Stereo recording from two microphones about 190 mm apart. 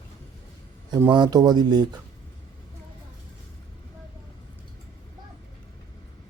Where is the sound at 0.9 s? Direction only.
20° right (ahead or behind).